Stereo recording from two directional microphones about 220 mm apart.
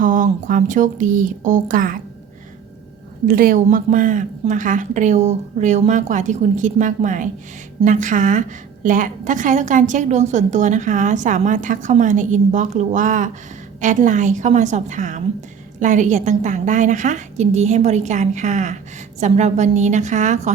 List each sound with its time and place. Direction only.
0.0 s a woman's voice: 35° right (ahead or behind)
3.2 s a woman's voice: 40° right (ahead or behind)